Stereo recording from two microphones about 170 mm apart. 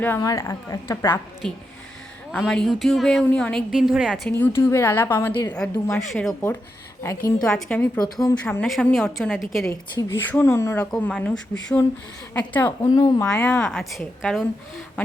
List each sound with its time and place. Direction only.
0.0 s a woman's voice: 15° left (ahead or behind)
1.4 s a woman's voice: centre (ahead or behind)
4.3 s a woman's voice: 10° left (ahead or behind)
10.1 s a woman's voice: 10° left (ahead or behind)
13.0 s a woman's voice: 25° left (ahead or behind)
13.7 s a woman's voice: centre (ahead or behind)